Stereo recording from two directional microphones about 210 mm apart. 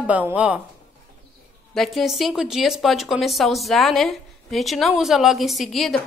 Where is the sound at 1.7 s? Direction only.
Centre (ahead or behind).